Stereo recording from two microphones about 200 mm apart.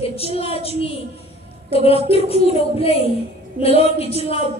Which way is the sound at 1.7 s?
30° left (ahead or behind).